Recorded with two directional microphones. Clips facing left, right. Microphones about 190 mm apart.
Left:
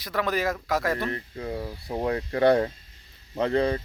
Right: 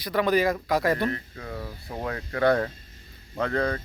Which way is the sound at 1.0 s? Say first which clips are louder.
Even; 25° left (ahead or behind).